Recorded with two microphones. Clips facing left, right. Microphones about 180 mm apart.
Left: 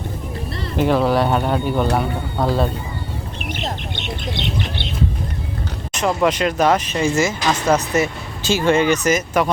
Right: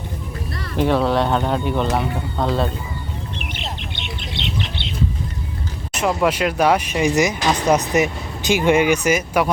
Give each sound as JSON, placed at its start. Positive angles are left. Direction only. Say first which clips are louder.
{"t": 0.8, "sound": "speech", "louder": "left 1 dB", "side_deg": 0}
{"t": 3.3, "sound": "bird", "louder": "left 4 dB", "side_deg": 45}
{"t": 5.9, "sound": "speech", "louder": "left 1 dB", "side_deg": -5}